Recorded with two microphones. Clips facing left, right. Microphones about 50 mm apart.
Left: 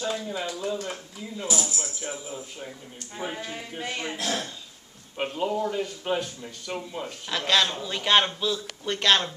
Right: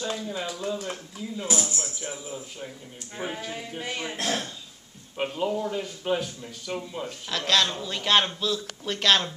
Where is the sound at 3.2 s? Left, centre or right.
Centre.